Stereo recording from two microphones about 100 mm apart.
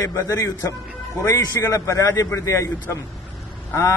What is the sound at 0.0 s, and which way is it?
A man's voice, 35° left (ahead or behind).